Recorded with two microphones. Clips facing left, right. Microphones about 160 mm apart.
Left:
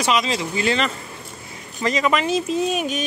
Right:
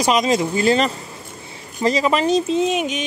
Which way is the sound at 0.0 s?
45° right (ahead or behind).